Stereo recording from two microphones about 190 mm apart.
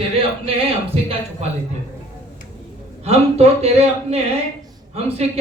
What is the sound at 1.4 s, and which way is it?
Speech, 35° right (ahead or behind).